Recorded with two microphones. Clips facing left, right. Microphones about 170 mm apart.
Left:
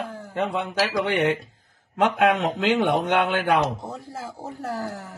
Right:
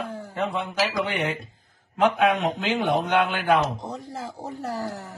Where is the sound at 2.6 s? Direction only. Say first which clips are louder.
Left 3 dB; 85° left.